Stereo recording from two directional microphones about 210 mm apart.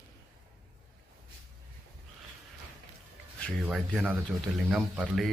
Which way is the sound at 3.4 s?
5° left (ahead or behind).